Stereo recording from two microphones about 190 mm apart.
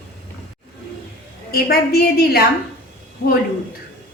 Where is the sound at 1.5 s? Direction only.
55° left (ahead or behind).